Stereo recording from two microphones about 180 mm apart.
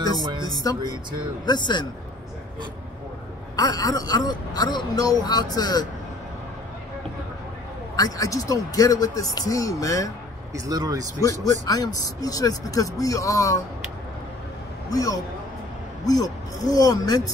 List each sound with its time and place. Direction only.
0.2 s speech: 25° right (ahead or behind)
1.4 s speech: 25° left (ahead or behind)
3.5 s speech: 20° left (ahead or behind)
7.9 s speech: 20° left (ahead or behind)
10.5 s speech: 20° right (ahead or behind)
11.1 s speech: 20° left (ahead or behind)
14.9 s a man's voice: 20° left (ahead or behind)